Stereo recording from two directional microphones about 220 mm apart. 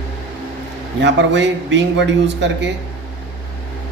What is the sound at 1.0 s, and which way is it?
Speech, 55° right (ahead or behind).